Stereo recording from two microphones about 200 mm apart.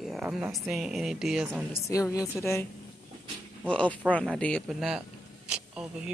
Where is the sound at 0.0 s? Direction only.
Centre (ahead or behind).